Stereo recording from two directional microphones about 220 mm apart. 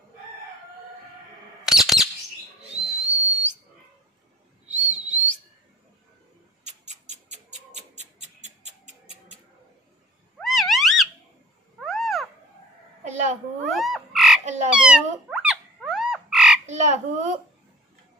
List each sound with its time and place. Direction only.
1.7 s bird: centre (ahead or behind)
2.7 s whistle: 30° right (ahead or behind)
5.0 s whistling: 30° right (ahead or behind)
6.6 s cat: 30° right (ahead or behind)
10.4 s a sound: centre (ahead or behind)
13.0 s a sound: 35° right (ahead or behind)
13.7 s frog: centre (ahead or behind)
14.4 s frog: 35° right (ahead or behind)
14.7 s frog: 5° right (ahead or behind)
16.6 s croak: 35° right (ahead or behind)